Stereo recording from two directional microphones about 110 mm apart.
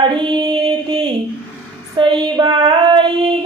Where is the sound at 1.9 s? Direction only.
45° right (ahead or behind).